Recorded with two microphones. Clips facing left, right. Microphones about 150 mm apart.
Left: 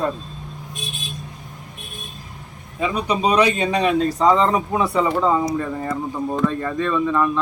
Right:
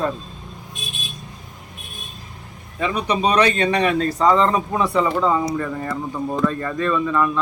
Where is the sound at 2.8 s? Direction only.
15° left (ahead or behind).